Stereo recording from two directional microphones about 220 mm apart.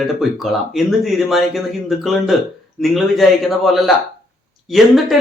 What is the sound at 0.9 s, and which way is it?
Speech, centre (ahead or behind).